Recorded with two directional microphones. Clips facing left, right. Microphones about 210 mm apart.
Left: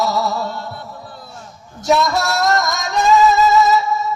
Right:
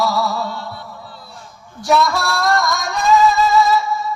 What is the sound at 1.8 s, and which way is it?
Music, 20° left (ahead or behind).